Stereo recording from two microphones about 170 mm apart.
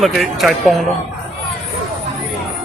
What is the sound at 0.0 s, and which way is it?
Speech, centre (ahead or behind).